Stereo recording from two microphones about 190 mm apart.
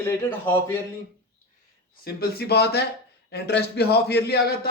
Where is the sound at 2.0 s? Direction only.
55° left (ahead or behind).